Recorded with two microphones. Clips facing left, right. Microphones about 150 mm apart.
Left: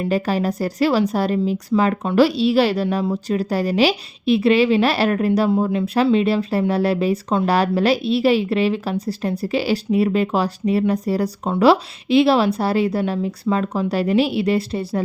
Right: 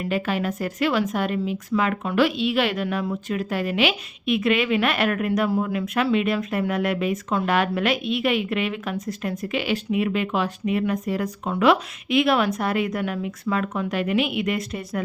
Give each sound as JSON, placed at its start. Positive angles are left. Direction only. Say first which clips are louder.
{"t": 0.0, "sound": "speech", "louder": "left 5 dB", "side_deg": 35}